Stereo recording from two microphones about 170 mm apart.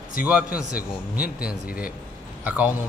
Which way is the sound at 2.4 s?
10° right (ahead or behind).